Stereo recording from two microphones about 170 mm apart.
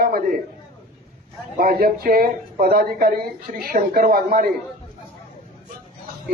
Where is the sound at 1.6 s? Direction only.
60° right (ahead or behind).